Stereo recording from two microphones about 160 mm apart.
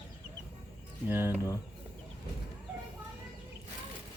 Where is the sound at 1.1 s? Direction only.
15° right (ahead or behind).